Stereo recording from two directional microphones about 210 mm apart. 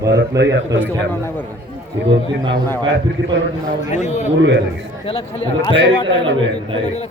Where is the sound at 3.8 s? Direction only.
35° left (ahead or behind).